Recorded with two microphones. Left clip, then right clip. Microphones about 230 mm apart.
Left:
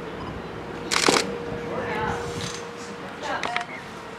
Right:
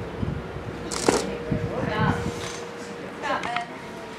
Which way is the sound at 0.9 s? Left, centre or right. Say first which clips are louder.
Left 3 dB; centre.